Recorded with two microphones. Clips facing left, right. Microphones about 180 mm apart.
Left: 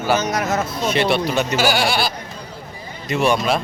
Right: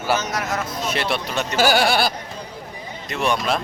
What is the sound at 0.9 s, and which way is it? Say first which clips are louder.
Speech: left 7 dB; centre (ahead or behind).